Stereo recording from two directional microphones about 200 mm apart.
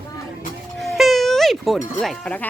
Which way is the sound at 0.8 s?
Centre (ahead or behind).